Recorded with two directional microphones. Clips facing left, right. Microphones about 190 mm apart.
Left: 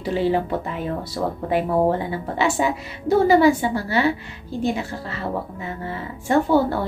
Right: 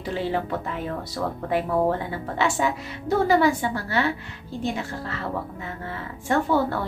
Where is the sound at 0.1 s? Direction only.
15° left (ahead or behind).